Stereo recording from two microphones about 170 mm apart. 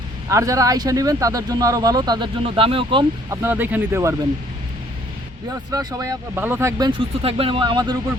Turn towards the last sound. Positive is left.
turn(degrees=-25)  # may be behind; listen again after turning